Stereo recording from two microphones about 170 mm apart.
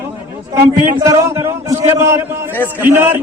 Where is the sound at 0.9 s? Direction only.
20° right (ahead or behind).